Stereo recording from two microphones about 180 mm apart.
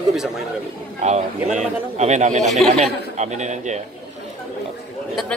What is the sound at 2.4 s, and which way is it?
Speech, centre (ahead or behind).